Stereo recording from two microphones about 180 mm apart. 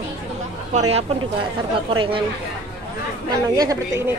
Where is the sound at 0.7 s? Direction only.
35° right (ahead or behind).